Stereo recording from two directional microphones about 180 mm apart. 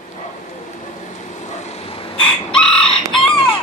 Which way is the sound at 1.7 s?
35° left (ahead or behind).